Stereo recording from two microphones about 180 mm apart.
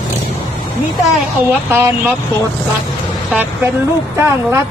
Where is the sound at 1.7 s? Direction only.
10° right (ahead or behind).